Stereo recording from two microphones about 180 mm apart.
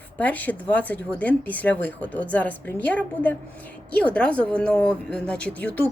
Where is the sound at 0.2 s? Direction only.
10° left (ahead or behind).